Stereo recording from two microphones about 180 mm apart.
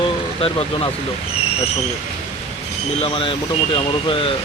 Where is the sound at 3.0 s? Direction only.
30° left (ahead or behind).